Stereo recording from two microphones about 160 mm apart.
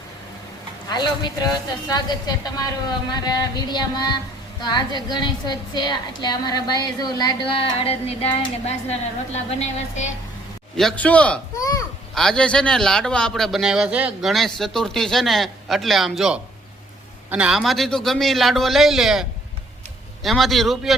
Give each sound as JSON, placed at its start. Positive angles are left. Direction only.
{"t": 0.9, "sound": "a woman's voice", "side_deg": 25}
{"t": 10.8, "sound": "a man's voice", "side_deg": 5}